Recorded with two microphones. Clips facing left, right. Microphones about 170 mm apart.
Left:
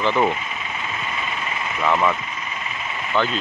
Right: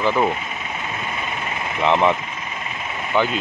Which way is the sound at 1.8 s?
20° right (ahead or behind).